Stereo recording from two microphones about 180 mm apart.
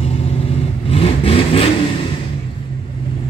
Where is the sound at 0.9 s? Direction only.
30° left (ahead or behind).